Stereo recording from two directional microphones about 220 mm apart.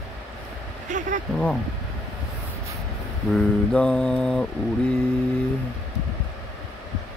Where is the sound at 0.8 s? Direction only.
35° right (ahead or behind).